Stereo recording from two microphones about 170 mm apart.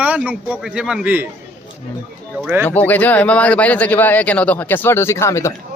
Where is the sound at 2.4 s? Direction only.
10° right (ahead or behind).